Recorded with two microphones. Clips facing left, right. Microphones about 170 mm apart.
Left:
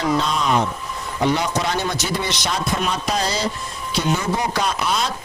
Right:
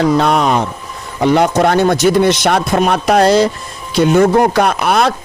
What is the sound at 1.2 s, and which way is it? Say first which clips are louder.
Speech: right 9 dB; 55° right (ahead or behind).